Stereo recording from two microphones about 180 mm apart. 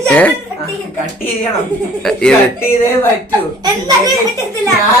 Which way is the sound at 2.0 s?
10° left (ahead or behind).